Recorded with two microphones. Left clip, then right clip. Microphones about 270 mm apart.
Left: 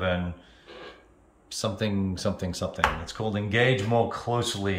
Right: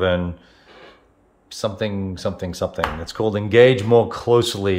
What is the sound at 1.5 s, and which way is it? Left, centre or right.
Speech, centre.